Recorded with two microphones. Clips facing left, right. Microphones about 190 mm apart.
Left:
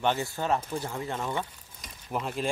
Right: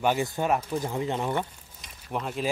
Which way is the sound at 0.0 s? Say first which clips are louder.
Right 3 dB; 10° right (ahead or behind).